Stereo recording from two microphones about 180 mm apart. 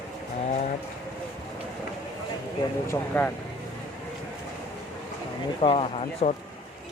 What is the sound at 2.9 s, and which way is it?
Speech, 10° left (ahead or behind).